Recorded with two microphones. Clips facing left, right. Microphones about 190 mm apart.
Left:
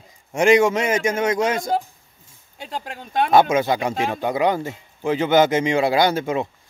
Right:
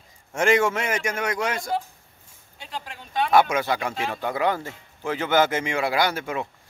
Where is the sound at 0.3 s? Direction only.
15° left (ahead or behind).